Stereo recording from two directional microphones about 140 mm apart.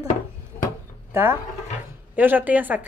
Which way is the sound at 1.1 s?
15° right (ahead or behind).